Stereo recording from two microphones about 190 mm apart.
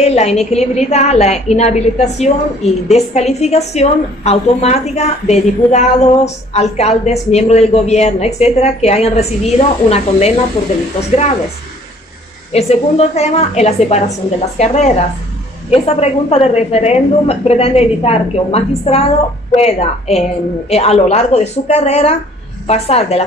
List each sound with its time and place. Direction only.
0.0 s a woman's voice: 35° left (ahead or behind)
12.5 s a woman's voice: 35° left (ahead or behind)